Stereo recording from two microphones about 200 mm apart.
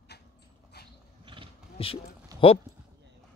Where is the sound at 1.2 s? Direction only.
25° right (ahead or behind).